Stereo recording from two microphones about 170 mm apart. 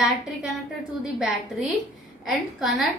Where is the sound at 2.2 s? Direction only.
Centre (ahead or behind).